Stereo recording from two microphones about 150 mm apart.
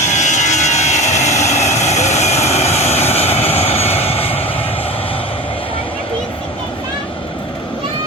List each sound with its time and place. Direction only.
0.0 s vehicle: 50° left (ahead or behind)